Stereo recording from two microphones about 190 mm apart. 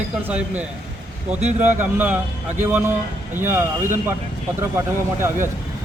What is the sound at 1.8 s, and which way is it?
Speech, 10° right (ahead or behind).